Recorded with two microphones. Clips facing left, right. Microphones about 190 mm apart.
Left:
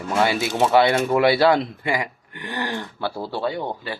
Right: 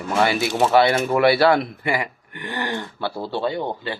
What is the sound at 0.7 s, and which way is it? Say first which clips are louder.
Speech: even; 15° left (ahead or behind).